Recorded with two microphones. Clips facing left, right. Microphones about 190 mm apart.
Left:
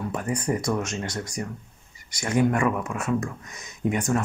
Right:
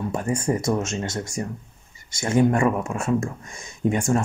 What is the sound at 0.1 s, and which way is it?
Speech, 25° right (ahead or behind).